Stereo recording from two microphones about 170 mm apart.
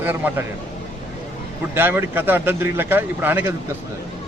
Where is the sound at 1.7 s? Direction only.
15° right (ahead or behind).